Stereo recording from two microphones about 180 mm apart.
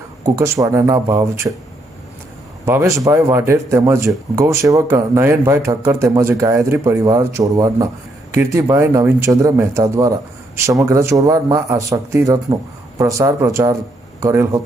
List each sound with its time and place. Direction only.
0.3 s speech: 15° right (ahead or behind)
2.6 s speech: 15° right (ahead or behind)